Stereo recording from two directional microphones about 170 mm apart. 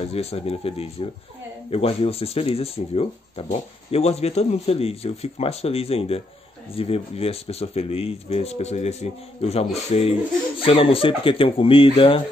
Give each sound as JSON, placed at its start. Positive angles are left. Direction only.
{"t": 0.0, "sound": "speech", "side_deg": 35}